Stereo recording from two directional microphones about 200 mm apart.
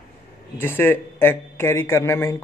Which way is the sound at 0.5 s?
10° left (ahead or behind).